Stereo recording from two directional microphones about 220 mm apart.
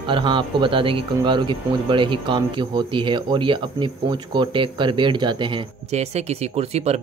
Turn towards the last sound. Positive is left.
turn(degrees=-30)  # may be behind; listen again after turning